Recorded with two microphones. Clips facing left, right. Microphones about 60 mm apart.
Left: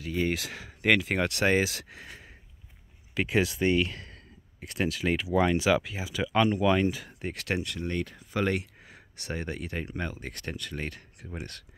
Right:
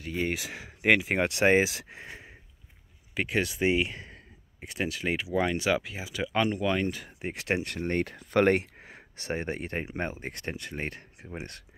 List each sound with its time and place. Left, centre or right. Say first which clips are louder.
0.0 s speech: left 2 dB; centre; by 2.3 s right
3.2 s speech: left 2 dB; centre
3.6 s a sound: even; centre
4.6 s speech: left 2 dB; centre
7.1 s speech: right 2 dB; centre
7.6 s speech: right 3 dB; right